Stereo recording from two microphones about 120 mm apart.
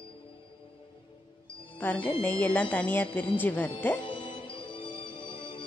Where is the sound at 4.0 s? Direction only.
40° left (ahead or behind).